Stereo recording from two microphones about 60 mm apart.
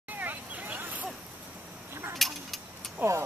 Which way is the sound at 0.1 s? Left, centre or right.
Right.